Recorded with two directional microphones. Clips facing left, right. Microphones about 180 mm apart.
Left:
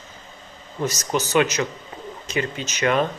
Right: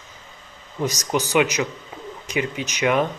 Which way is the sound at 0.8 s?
15° right (ahead or behind).